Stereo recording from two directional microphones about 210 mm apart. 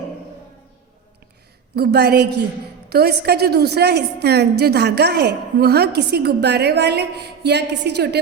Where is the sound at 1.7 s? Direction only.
50° right (ahead or behind).